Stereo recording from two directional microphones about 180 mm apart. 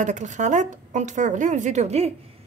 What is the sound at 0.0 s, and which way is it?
A woman's voice, 40° right (ahead or behind).